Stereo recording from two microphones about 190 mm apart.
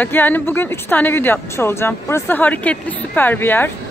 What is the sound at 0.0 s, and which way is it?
A woman's voice, 10° left (ahead or behind).